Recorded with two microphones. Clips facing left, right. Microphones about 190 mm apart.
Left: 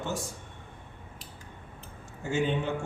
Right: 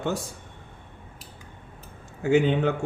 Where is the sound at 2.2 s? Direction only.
65° right (ahead or behind).